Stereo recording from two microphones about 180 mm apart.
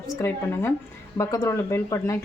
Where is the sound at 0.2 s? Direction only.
15° left (ahead or behind).